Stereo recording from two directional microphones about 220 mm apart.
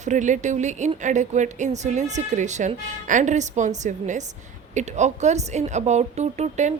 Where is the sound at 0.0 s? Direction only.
35° right (ahead or behind).